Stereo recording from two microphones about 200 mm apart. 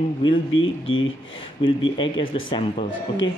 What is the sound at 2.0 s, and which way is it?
Speech, 25° left (ahead or behind).